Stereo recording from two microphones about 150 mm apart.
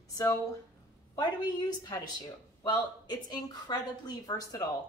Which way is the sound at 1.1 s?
25° left (ahead or behind).